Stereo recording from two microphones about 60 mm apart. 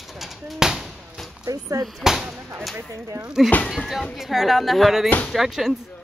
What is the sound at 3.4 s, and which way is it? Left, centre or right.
Speech, left.